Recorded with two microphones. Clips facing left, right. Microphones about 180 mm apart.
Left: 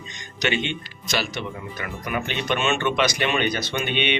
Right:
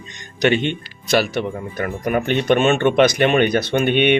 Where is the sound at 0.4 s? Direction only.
50° right (ahead or behind).